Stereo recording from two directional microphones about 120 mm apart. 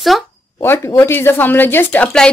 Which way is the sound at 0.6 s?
20° left (ahead or behind).